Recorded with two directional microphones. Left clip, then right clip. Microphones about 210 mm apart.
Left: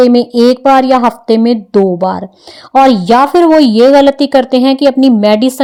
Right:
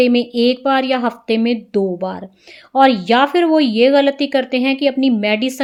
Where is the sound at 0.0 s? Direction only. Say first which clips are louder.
Left 7 dB; 25° left (ahead or behind).